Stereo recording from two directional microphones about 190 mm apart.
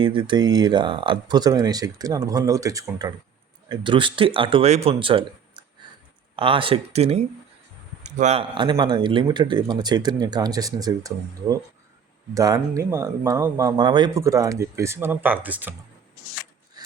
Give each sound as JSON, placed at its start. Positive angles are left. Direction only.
{"t": 0.0, "sound": "speech", "side_deg": -25}